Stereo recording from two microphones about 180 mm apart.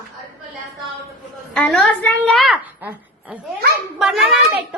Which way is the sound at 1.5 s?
5° left (ahead or behind).